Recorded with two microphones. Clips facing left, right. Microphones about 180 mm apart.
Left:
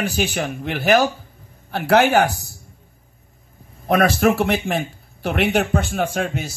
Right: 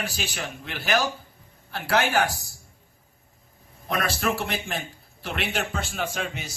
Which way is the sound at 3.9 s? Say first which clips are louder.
Left 10 dB; 60° left (ahead or behind).